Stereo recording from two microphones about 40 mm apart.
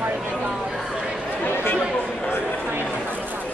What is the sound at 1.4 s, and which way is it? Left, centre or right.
Chatter, left.